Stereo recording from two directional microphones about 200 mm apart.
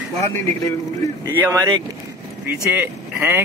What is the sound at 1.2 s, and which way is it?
Speech, 15° right (ahead or behind).